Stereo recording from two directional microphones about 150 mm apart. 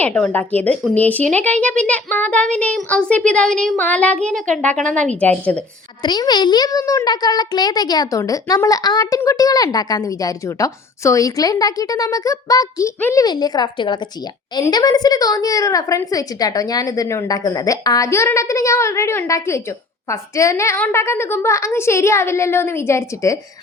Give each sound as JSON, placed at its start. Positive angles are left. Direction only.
{"t": 0.0, "sound": "speech", "side_deg": 10}
{"t": 6.0, "sound": "a woman's voice", "side_deg": 30}
{"t": 13.2, "sound": "a woman's voice", "side_deg": 25}